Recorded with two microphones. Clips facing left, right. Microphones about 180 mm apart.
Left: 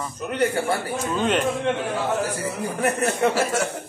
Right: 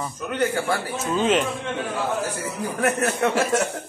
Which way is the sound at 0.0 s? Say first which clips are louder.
Left 1 dB; centre (ahead or behind).